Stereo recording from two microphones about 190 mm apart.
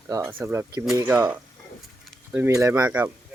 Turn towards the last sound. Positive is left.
turn(degrees=-10)  # may be behind; listen again after turning